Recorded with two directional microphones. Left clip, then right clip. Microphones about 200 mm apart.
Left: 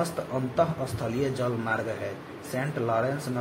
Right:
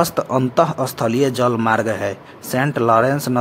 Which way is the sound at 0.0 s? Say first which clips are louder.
Right 12 dB; 45° right (ahead or behind).